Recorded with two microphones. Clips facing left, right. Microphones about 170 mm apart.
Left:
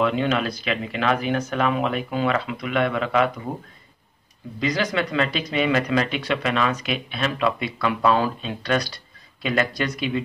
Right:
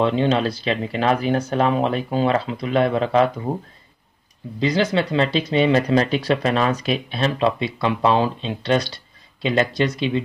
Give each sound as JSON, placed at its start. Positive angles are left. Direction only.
{"t": 0.0, "sound": "speech", "side_deg": -30}
{"t": 4.6, "sound": "speech", "side_deg": -25}